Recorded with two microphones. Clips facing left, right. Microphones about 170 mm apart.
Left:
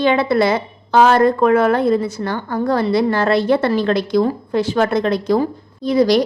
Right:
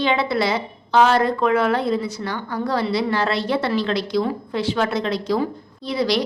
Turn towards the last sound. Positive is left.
turn(degrees=45)  # may be behind; listen again after turning